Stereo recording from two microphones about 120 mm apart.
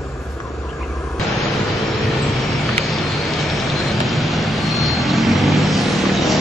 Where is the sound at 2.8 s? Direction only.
Centre (ahead or behind).